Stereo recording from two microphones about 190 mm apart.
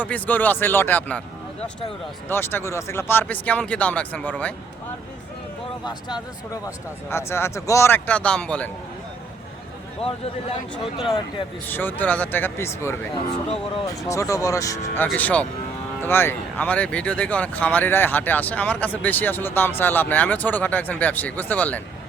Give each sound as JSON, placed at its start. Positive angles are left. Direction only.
{"t": 0.0, "sound": "speech", "side_deg": 10}
{"t": 2.3, "sound": "speech", "side_deg": 10}
{"t": 5.8, "sound": "speech", "side_deg": 20}
{"t": 11.0, "sound": "speech", "side_deg": 30}
{"t": 11.7, "sound": "speech", "side_deg": 10}
{"t": 14.1, "sound": "speech", "side_deg": 15}